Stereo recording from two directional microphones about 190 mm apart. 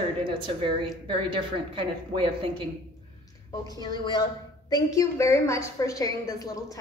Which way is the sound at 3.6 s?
20° left (ahead or behind).